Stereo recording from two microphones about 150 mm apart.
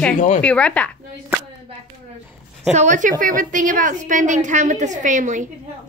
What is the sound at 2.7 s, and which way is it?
A woman's voice, 55° right (ahead or behind).